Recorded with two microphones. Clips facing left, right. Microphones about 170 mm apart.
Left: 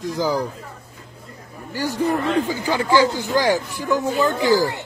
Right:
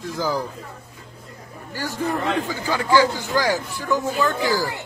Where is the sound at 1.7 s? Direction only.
15° left (ahead or behind).